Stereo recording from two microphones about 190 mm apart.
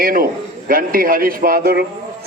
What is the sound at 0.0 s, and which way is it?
A man's voice, 50° right (ahead or behind).